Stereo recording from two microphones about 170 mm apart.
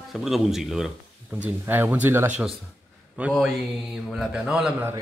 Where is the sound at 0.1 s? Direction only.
Centre (ahead or behind).